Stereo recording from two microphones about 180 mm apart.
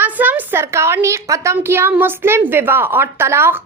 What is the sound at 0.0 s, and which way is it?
A woman's voice, 10° right (ahead or behind).